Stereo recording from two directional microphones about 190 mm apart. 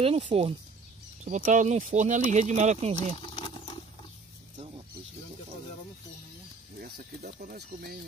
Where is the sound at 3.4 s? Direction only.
25° left (ahead or behind).